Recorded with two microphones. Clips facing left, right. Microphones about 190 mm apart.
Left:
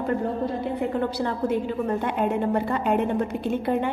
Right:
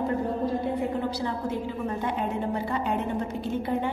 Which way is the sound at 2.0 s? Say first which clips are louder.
Left 4 dB; 60° left (ahead or behind).